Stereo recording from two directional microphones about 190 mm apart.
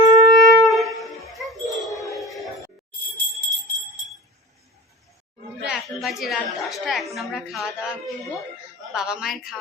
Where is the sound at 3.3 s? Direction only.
Centre (ahead or behind).